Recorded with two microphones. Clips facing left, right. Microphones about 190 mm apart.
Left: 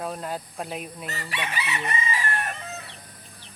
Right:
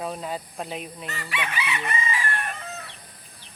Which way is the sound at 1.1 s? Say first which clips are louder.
Right 1 dB; 40° left (ahead or behind).